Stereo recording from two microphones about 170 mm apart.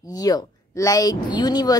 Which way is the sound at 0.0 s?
20° left (ahead or behind).